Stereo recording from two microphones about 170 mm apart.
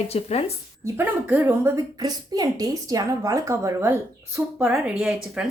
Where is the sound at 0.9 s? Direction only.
10° right (ahead or behind).